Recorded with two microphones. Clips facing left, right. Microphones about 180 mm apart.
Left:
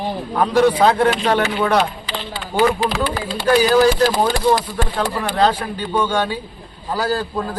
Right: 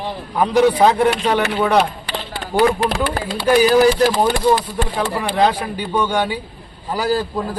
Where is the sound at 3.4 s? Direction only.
15° right (ahead or behind).